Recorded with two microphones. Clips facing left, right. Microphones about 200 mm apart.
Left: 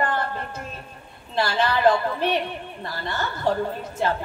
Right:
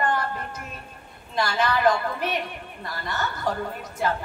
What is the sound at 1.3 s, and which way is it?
A woman's voice, 30° left (ahead or behind).